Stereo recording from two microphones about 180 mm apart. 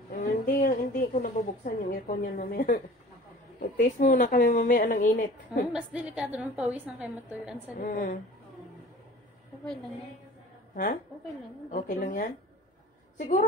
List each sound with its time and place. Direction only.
0.1 s a sound: 50° left (ahead or behind)
3.5 s a woman's voice: 45° left (ahead or behind)
5.7 s a woman's voice: 5° right (ahead or behind)
7.8 s a woman's voice: 45° left (ahead or behind)
11.7 s a woman's voice: 45° left (ahead or behind)